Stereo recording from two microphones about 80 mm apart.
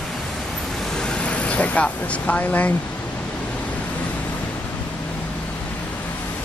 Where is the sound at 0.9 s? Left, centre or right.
Centre.